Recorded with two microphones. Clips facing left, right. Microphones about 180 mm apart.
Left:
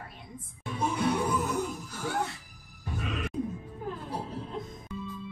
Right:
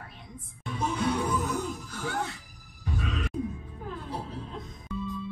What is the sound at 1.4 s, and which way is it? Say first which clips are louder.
Music: even; 5° left (ahead or behind).